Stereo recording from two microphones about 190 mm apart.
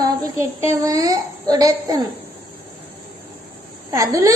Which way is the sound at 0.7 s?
20° right (ahead or behind).